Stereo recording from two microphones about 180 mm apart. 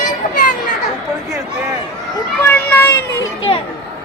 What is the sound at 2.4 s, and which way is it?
Children playing, 10° left (ahead or behind).